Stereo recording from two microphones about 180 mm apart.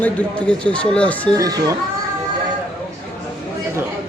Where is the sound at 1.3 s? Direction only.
20° right (ahead or behind).